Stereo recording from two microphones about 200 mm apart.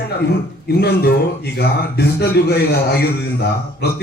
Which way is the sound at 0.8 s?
50° left (ahead or behind).